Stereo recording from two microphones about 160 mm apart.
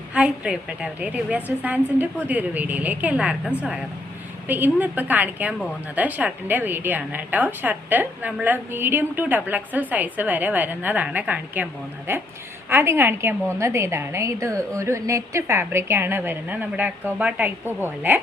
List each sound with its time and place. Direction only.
0.1 s a woman's voice: 5° right (ahead or behind)